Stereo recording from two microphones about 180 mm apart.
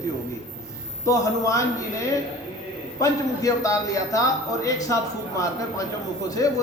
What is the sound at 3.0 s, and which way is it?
A man's voice, 20° left (ahead or behind).